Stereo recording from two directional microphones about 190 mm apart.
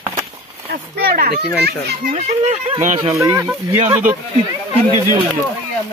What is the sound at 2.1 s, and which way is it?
Speech, 35° right (ahead or behind).